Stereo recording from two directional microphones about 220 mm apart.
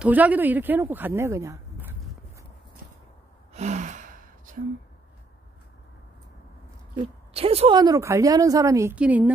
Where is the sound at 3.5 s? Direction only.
30° right (ahead or behind).